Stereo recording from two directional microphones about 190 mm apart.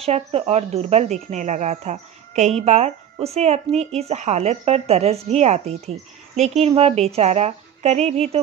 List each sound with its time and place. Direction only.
0.0 s speech: 35° right (ahead or behind)